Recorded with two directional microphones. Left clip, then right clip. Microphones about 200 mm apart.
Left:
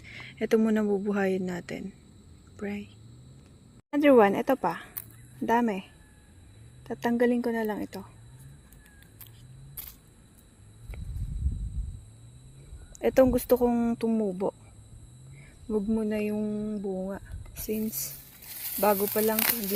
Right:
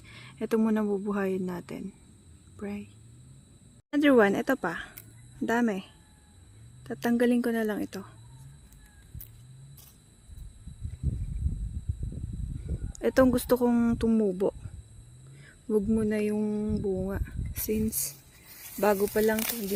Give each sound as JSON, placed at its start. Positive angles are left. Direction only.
{"t": 0.0, "sound": "speech", "side_deg": -10}
{"t": 3.9, "sound": "speech", "side_deg": -5}
{"t": 6.8, "sound": "speech", "side_deg": -10}
{"t": 13.0, "sound": "speech", "side_deg": -5}
{"t": 15.7, "sound": "speech", "side_deg": -20}